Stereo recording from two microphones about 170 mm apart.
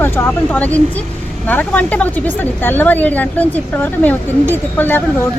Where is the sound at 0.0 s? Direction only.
10° left (ahead or behind).